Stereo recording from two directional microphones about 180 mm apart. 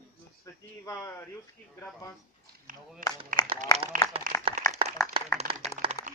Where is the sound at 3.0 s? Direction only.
50° right (ahead or behind).